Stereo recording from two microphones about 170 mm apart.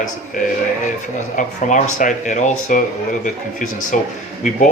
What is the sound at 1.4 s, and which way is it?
Speech, 50° left (ahead or behind).